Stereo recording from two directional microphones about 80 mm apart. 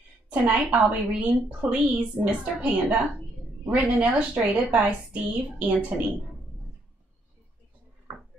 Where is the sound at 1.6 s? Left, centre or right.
Centre.